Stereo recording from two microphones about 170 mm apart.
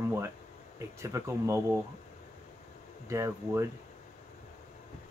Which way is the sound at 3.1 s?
15° right (ahead or behind).